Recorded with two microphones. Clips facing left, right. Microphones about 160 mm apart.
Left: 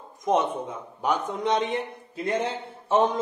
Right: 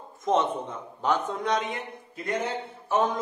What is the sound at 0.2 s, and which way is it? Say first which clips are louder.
A man's voice: left 1 dB; 10° left (ahead or behind).